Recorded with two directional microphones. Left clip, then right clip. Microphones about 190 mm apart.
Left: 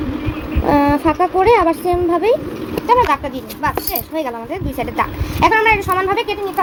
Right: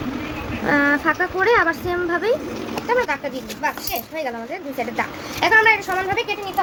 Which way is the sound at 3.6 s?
30° left (ahead or behind).